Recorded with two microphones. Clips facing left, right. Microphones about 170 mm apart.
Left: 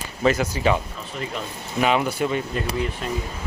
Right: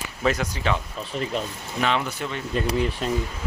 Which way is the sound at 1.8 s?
10° left (ahead or behind).